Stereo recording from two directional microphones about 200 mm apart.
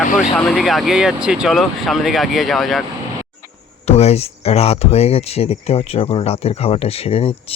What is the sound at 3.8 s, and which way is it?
Speech, 30° left (ahead or behind).